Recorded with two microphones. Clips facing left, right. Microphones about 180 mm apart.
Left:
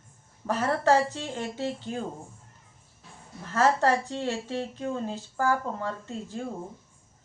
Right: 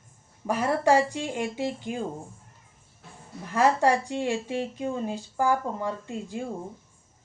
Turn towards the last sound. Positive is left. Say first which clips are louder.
# right 2 dB
turn(degrees=-15)  # may be behind; listen again after turning